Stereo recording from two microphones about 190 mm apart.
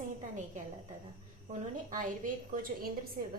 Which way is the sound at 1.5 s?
45° right (ahead or behind).